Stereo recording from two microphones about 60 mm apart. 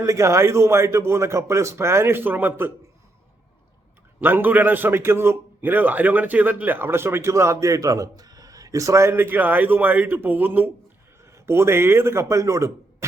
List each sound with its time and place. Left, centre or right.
0.0 s a man's voice: right
4.2 s a man's voice: right
9.1 s speech: right
11.3 s speech: right